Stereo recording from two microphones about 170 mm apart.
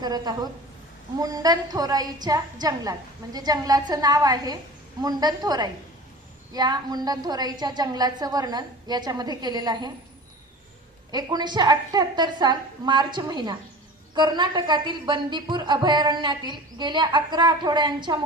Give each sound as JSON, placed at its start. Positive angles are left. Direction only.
{"t": 0.0, "sound": "a woman's voice", "side_deg": -25}
{"t": 11.1, "sound": "a woman's voice", "side_deg": -25}